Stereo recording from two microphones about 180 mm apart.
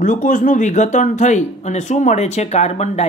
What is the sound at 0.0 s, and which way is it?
Speech, 45° left (ahead or behind).